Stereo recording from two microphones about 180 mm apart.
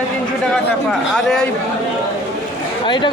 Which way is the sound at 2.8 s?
25° left (ahead or behind).